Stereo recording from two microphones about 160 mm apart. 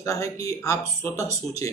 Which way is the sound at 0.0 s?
20° left (ahead or behind).